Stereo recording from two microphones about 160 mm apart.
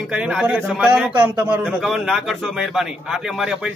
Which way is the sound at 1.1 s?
15° right (ahead or behind).